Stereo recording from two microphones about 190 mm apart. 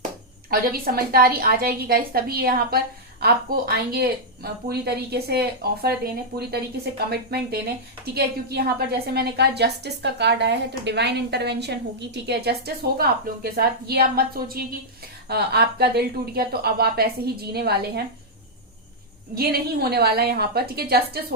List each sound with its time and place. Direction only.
0.5 s a woman's voice: 50° right (ahead or behind)
19.4 s a woman's voice: 55° right (ahead or behind)